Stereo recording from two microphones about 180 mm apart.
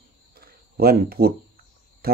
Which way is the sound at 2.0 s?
55° right (ahead or behind).